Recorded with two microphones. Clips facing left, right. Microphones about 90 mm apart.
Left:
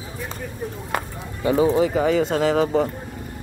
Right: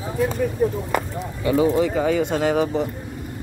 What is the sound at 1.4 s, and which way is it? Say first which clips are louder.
Speech: left 1 dB; 30° left (ahead or behind).